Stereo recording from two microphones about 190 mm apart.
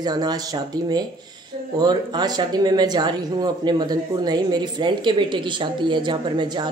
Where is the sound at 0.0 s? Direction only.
20° right (ahead or behind).